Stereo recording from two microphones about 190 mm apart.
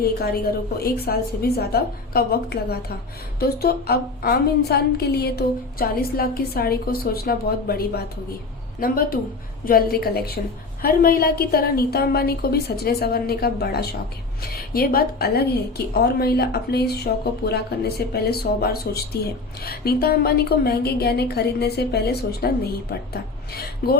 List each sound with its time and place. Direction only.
0.8 s a woman's voice: 55° left (ahead or behind)